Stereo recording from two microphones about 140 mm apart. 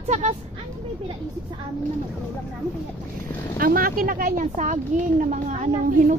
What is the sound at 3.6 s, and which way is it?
A child's voice, 90° right.